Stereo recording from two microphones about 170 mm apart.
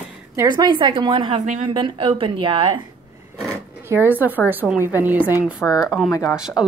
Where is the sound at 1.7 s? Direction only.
30° right (ahead or behind).